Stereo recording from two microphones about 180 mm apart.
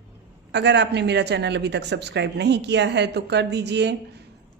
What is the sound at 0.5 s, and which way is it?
A woman's voice, 70° right (ahead or behind).